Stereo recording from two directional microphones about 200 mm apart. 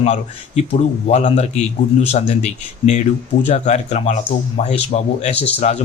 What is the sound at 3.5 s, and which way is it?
Speech, 35° left (ahead or behind).